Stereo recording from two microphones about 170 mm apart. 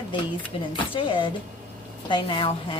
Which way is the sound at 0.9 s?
30° left (ahead or behind).